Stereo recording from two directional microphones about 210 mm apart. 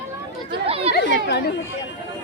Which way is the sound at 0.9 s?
55° left (ahead or behind).